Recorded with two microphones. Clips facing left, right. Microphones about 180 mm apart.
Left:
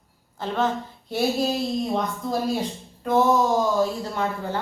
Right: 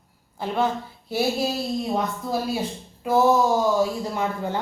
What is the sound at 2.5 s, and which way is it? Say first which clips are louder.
A woman's voice: left 1 dB; 5° right (ahead or behind).